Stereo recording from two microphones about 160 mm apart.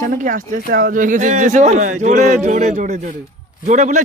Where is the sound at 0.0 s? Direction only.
55° right (ahead or behind).